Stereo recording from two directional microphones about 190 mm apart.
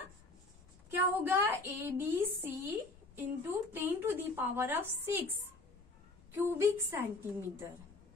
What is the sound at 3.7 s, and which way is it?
A woman's voice, 10° right (ahead or behind).